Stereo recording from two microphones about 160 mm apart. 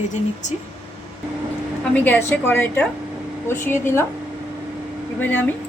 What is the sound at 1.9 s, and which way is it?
A woman's voice, 10° left (ahead or behind).